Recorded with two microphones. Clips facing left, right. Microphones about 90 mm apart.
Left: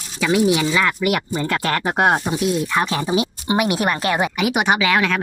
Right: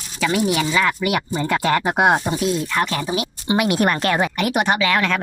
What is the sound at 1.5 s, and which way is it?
Speech, 10° right (ahead or behind).